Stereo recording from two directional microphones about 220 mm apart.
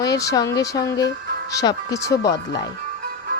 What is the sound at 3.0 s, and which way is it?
Music, 40° right (ahead or behind).